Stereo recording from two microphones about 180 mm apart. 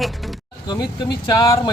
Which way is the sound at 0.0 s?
Centre (ahead or behind).